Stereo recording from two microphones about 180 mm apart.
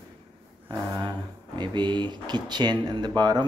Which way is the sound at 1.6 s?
25° right (ahead or behind).